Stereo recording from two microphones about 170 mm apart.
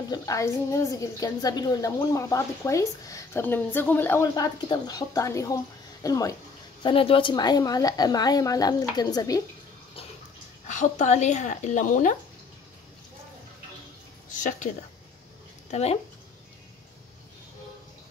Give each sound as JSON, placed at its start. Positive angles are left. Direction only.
{"t": 0.1, "sound": "a woman's voice", "side_deg": 20}
{"t": 6.8, "sound": "a woman's voice", "side_deg": 30}
{"t": 10.7, "sound": "speech", "side_deg": 45}
{"t": 14.3, "sound": "speech", "side_deg": 50}
{"t": 15.7, "sound": "speech", "side_deg": 40}